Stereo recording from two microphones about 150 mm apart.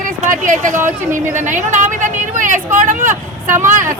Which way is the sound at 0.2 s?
60° right (ahead or behind).